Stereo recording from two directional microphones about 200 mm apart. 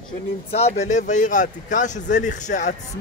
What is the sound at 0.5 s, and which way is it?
A man's voice, 30° left (ahead or behind).